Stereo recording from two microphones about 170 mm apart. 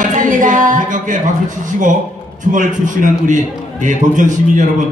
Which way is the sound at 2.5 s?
50° right (ahead or behind).